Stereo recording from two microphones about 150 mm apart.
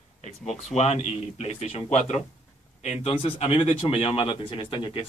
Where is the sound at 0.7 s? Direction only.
45° left (ahead or behind).